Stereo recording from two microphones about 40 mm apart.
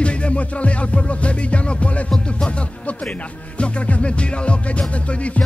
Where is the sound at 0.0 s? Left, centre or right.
Left.